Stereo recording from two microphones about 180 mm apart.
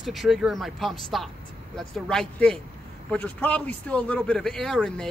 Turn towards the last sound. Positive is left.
turn(degrees=5)  # may be behind; listen again after turning